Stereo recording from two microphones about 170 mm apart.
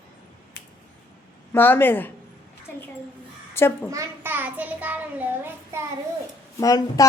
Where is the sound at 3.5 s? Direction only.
15° left (ahead or behind).